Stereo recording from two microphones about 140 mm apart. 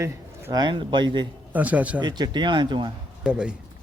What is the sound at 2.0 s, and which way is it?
Speech, 30° right (ahead or behind).